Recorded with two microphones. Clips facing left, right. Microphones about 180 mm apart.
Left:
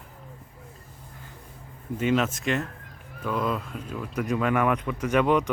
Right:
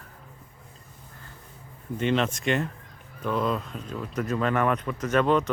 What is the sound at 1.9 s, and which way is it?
Speech, 5° left (ahead or behind).